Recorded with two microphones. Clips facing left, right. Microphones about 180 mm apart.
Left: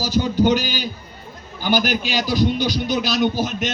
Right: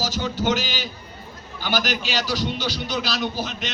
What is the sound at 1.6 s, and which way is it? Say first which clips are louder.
Speech: left 5 dB; 15° left (ahead or behind).